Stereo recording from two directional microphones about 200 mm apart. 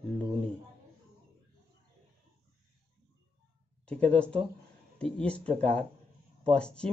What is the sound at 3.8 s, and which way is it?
Speech, 5° left (ahead or behind).